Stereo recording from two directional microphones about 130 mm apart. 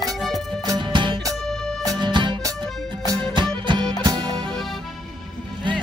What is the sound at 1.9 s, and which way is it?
Music, 35° right (ahead or behind).